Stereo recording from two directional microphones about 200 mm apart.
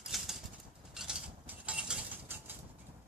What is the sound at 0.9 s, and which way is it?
Mechanisms, 5° right (ahead or behind).